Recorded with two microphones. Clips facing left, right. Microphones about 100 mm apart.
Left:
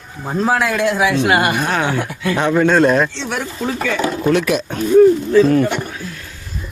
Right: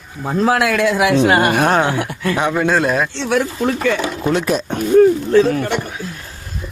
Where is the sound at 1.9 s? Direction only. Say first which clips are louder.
Even; 10° right (ahead or behind).